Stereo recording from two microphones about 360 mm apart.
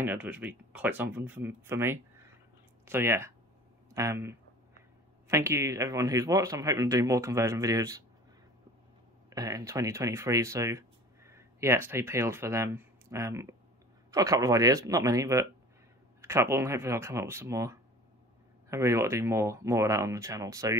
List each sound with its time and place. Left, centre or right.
0.0 s speech: centre
9.3 s speech: centre